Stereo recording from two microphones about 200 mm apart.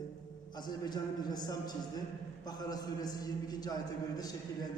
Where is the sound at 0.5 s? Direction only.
20° left (ahead or behind).